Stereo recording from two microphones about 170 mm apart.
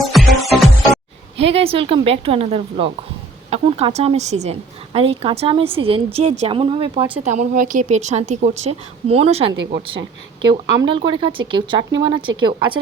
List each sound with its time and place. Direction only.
0.0 s music: centre (ahead or behind)
1.4 s a woman's voice: 35° right (ahead or behind)